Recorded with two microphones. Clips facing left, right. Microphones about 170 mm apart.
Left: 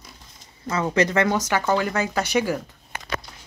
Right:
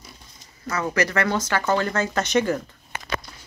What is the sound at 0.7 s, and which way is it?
Speech, 25° left (ahead or behind).